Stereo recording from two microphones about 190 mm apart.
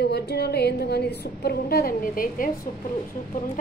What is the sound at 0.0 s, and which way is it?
A woman's voice, 60° left (ahead or behind).